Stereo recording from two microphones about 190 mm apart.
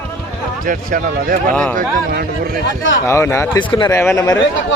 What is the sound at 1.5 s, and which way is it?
Speech, 5° left (ahead or behind).